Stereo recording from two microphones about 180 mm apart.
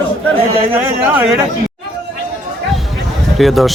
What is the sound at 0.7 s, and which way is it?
Speech, 5° right (ahead or behind).